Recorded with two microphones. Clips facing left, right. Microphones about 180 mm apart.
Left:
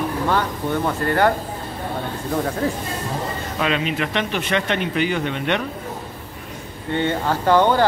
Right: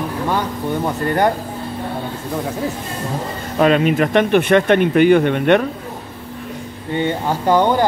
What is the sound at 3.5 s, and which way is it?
Speech, 45° right (ahead or behind).